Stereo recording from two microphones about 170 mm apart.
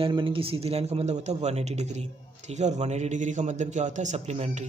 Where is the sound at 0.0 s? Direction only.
30° right (ahead or behind).